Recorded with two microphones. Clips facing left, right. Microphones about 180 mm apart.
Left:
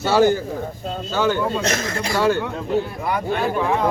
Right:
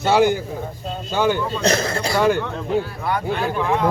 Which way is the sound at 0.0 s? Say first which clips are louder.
Even; 15° right (ahead or behind).